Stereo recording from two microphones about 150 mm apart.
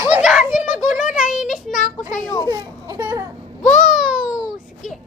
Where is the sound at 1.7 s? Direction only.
55° left (ahead or behind).